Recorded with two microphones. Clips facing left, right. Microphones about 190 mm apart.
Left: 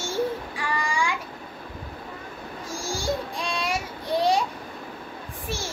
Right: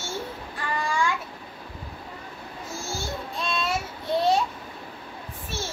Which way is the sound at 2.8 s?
90° left.